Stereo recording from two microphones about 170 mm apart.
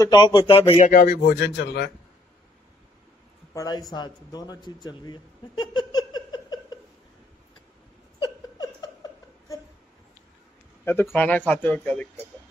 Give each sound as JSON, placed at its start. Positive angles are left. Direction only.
{"t": 0.0, "sound": "speech", "side_deg": 25}
{"t": 0.8, "sound": "a man's voice", "side_deg": 60}
{"t": 3.5, "sound": "speech", "side_deg": 25}
{"t": 4.8, "sound": "a sound", "side_deg": 25}
{"t": 8.2, "sound": "laughter", "side_deg": 20}
{"t": 11.1, "sound": "speech", "side_deg": 10}